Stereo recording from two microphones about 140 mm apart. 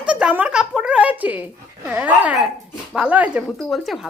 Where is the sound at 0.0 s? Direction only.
10° right (ahead or behind).